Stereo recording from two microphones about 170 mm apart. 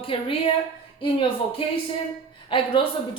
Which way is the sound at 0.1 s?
30° left (ahead or behind).